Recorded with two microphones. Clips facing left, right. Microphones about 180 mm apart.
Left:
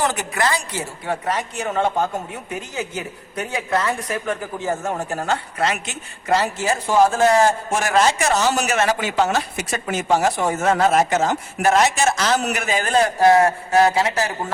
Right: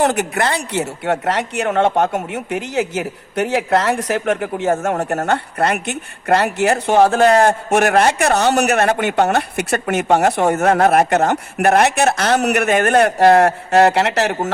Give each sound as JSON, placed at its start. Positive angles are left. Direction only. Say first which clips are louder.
{"t": 0.0, "sound": "a woman's voice", "louder": "right 5 dB", "side_deg": -65}